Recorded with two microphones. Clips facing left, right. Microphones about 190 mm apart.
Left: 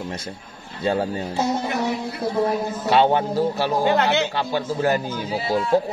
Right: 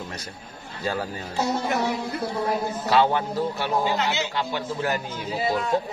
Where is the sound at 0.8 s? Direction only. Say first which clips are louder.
Left 6 dB; 25° left (ahead or behind).